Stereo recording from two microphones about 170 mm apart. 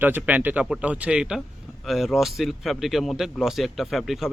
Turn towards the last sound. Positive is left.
turn(degrees=0)  # may be behind; listen again after turning